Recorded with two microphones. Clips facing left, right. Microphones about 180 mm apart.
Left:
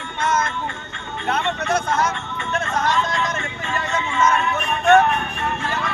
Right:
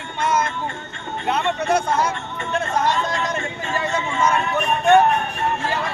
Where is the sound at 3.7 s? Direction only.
40° right (ahead or behind).